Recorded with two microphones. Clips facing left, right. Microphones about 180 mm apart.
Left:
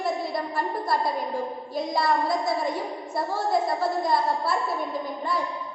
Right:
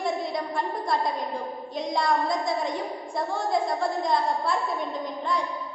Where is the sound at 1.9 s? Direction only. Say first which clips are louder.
Left 1 dB; 5° left (ahead or behind).